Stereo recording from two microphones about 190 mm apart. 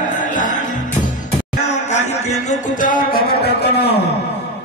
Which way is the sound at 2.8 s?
50° left (ahead or behind).